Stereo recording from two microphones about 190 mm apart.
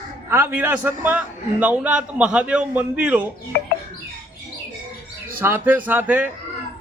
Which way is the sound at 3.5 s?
60° left (ahead or behind).